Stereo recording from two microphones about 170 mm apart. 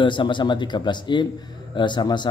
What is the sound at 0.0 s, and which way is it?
Speech, 30° left (ahead or behind).